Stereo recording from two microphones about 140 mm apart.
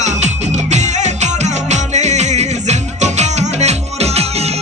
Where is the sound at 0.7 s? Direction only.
55° right (ahead or behind).